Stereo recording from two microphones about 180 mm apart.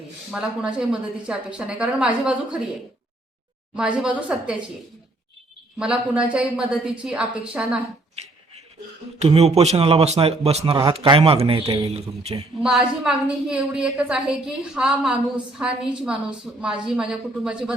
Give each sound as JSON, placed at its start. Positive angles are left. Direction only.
{"t": 0.3, "sound": "a woman's voice", "side_deg": -5}
{"t": 3.8, "sound": "a woman's voice", "side_deg": -5}
{"t": 5.8, "sound": "a woman's voice", "side_deg": -5}
{"t": 9.1, "sound": "a man's voice", "side_deg": -35}
{"t": 12.6, "sound": "a woman's voice", "side_deg": -5}